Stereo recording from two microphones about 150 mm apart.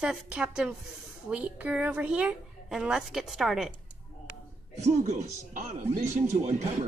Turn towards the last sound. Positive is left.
turn(degrees=-55)  # may be behind; listen again after turning